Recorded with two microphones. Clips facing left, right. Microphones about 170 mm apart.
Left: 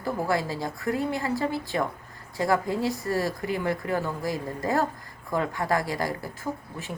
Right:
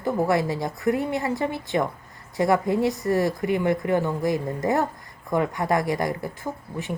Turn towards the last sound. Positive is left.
turn(degrees=-20)  # may be behind; listen again after turning